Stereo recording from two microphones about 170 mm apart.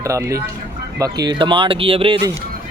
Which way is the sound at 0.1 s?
15° right (ahead or behind).